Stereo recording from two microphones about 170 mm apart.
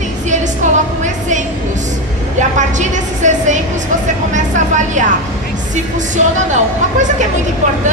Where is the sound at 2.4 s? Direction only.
45° right (ahead or behind).